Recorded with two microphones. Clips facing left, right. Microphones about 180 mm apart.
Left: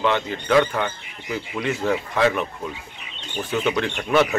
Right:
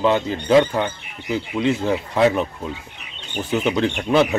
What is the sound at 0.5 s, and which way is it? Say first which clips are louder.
Speech: right 3 dB; 20° right (ahead or behind).